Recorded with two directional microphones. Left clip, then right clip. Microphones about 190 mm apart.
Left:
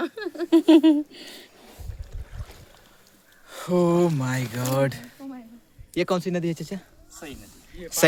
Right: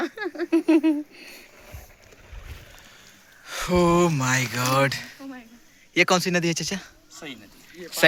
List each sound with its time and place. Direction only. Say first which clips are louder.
0.0 s a sound: right 1 dB; 15° left (ahead or behind)
0.5 s speech: left 4 dB; 50° left (ahead or behind)
3.4 s speech: right 2 dB; 5° left (ahead or behind)
5.9 s speech: right 5 dB; 5° left (ahead or behind)
7.1 s a sound: right 1 dB; 35° right (ahead or behind)
7.8 s speech: left 1 dB; 50° left (ahead or behind)